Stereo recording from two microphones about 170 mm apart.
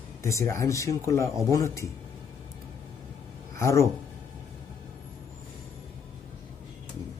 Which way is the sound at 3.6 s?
15° left (ahead or behind).